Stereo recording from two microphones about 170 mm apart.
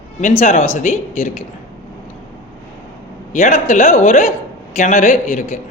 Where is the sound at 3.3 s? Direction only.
45° left (ahead or behind).